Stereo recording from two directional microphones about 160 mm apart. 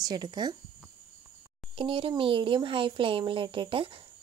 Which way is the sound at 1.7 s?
35° right (ahead or behind).